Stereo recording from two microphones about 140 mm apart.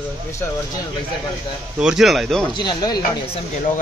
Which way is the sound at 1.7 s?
5° right (ahead or behind).